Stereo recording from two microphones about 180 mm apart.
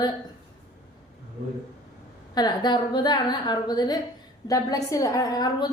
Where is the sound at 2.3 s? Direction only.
25° left (ahead or behind).